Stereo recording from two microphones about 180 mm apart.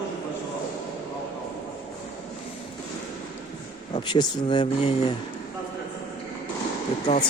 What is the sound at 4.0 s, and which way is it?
Speech, 25° left (ahead or behind).